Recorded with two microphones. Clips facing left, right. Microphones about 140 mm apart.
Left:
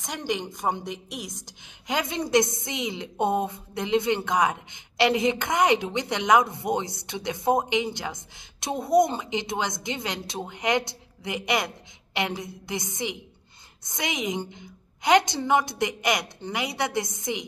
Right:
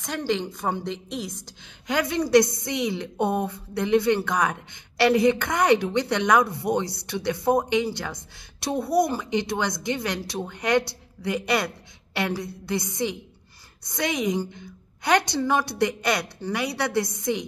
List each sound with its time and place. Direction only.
0.0 s a woman's voice: 15° left (ahead or behind)